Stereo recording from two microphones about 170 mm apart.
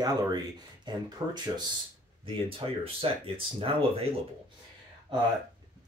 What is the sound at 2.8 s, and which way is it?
Speech, 30° right (ahead or behind).